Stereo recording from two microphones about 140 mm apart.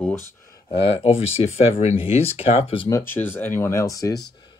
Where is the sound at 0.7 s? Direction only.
40° left (ahead or behind).